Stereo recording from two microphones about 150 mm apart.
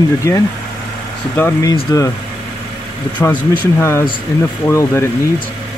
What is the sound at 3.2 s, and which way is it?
Speech, 15° left (ahead or behind).